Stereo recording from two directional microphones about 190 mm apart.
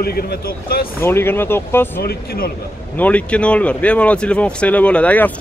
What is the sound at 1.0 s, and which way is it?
Speech, 10° left (ahead or behind).